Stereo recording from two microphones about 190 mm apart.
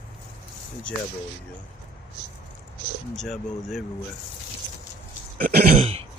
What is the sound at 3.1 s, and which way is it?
Speech, centre (ahead or behind).